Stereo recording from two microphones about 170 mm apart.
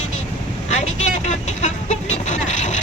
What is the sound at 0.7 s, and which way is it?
Vehicle, 40° left (ahead or behind).